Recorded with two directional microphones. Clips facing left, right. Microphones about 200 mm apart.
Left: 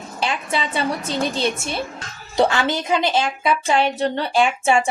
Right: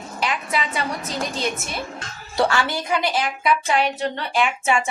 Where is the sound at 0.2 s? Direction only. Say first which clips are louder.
Left 1 dB; 30° left (ahead or behind).